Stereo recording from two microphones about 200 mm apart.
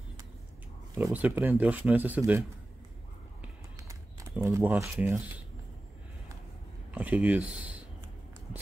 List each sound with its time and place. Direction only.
0.9 s speech: 10° right (ahead or behind)
3.8 s a sound: 15° right (ahead or behind)
4.4 s speech: 15° right (ahead or behind)
6.9 s speech: 5° right (ahead or behind)